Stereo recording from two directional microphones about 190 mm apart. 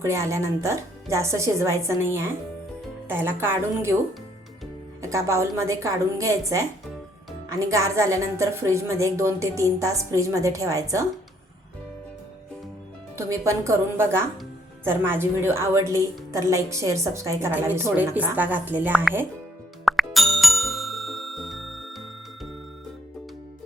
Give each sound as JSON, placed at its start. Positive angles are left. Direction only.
{"t": 0.0, "sound": "a woman's voice", "side_deg": -15}
{"t": 5.0, "sound": "a woman's voice", "side_deg": -15}
{"t": 13.1, "sound": "a woman's voice", "side_deg": -15}
{"t": 19.8, "sound": "music", "side_deg": 0}